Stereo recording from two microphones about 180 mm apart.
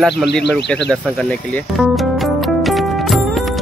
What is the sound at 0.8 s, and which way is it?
Music, 5° left (ahead or behind).